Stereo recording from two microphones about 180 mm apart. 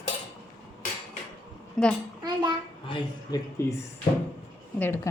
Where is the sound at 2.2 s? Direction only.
25° right (ahead or behind).